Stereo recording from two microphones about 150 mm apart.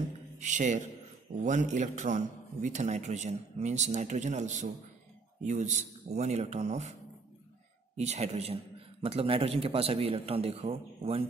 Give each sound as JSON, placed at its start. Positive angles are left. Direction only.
{"t": 0.4, "sound": "a man's voice", "side_deg": -55}